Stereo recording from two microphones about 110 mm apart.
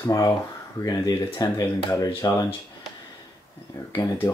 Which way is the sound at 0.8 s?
40° left (ahead or behind).